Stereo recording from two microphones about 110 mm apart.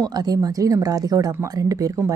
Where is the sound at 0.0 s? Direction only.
35° right (ahead or behind).